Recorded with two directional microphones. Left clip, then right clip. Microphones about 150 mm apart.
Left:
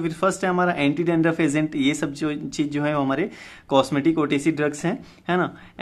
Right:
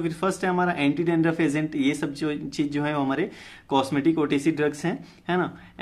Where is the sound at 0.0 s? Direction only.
30° left (ahead or behind).